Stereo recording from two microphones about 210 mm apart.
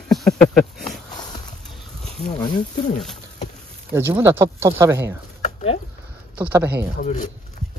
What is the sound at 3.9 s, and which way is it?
Speech, 10° right (ahead or behind).